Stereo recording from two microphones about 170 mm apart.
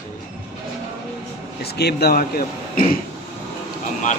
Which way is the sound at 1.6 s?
70° left (ahead or behind).